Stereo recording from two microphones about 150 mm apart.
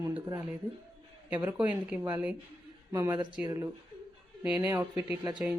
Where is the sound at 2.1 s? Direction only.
10° right (ahead or behind).